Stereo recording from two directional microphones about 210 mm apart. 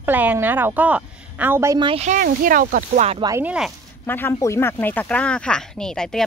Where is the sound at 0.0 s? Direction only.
10° right (ahead or behind); by 3.2 s 35° right (ahead or behind).